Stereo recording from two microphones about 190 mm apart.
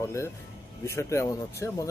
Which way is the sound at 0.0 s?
15° left (ahead or behind).